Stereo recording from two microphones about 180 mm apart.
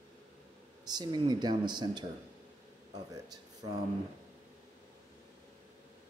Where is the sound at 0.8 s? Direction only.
25° right (ahead or behind).